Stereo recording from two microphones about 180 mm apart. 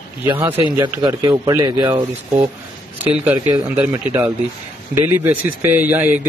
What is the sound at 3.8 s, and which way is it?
Speech, 10° right (ahead or behind).